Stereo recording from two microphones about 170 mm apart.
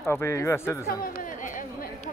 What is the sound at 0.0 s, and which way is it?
Speech, 15° left (ahead or behind).